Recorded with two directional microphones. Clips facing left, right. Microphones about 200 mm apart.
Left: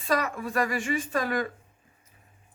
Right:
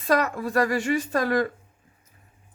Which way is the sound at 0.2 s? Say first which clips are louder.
Right 5 dB; 40° right (ahead or behind).